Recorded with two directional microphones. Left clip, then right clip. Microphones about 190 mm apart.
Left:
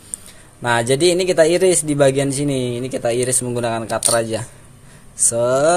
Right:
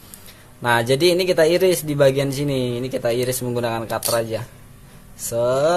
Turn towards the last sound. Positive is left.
turn(degrees=15)  # may be behind; listen again after turning